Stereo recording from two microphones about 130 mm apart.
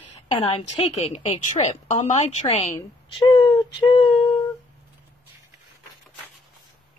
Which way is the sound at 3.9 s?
40° left (ahead or behind).